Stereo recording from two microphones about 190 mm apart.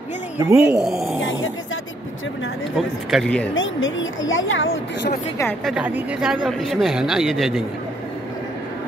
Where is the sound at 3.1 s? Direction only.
5° left (ahead or behind).